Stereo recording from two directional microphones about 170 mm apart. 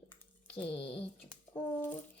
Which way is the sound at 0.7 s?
35° left (ahead or behind).